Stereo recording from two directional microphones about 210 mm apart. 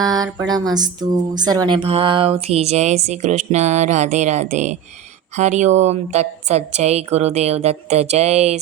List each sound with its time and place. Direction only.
0.0 s speech: 20° right (ahead or behind)